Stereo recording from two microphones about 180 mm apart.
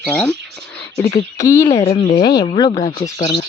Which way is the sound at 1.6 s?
30° left (ahead or behind).